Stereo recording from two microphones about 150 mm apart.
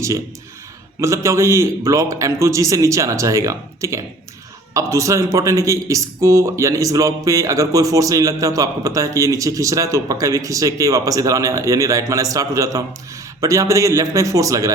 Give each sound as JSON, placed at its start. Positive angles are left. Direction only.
{"t": 1.0, "sound": "a man's voice", "side_deg": -20}